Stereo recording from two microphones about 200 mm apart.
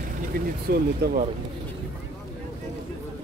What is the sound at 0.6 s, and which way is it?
Speech, 50° right (ahead or behind).